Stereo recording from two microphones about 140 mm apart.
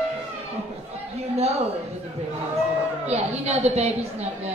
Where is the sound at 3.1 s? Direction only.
50° right (ahead or behind).